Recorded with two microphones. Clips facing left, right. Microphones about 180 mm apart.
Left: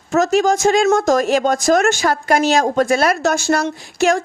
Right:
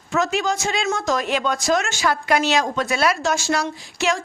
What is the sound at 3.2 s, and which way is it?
Speech, 60° left (ahead or behind).